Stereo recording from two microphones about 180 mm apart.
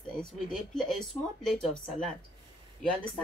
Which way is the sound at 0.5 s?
5° left (ahead or behind).